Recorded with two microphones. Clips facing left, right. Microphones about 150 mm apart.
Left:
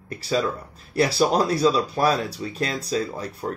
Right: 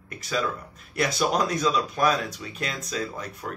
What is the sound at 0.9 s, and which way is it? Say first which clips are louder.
Speech: left 4 dB; 30° left (ahead or behind).